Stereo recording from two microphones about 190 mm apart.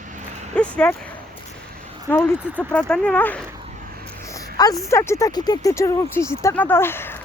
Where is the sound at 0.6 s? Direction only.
5° left (ahead or behind).